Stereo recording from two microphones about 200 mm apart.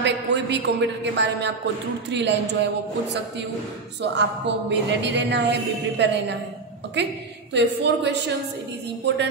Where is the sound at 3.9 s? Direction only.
60° right (ahead or behind).